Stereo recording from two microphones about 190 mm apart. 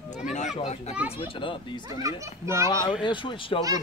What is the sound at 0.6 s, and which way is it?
A child's voice, 35° left (ahead or behind).